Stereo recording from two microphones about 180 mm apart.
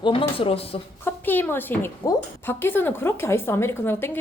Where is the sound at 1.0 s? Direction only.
10° left (ahead or behind).